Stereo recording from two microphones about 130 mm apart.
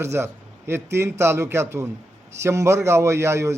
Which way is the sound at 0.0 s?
20° right (ahead or behind).